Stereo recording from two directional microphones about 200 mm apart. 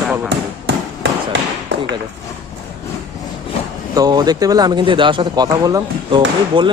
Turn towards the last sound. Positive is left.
turn(degrees=-25)  # may be behind; listen again after turning